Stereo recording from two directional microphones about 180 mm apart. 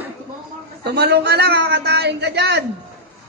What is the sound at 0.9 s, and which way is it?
Speech, 65° right (ahead or behind).